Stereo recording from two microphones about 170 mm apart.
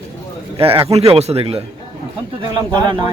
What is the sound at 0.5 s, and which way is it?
A man's voice, 30° right (ahead or behind).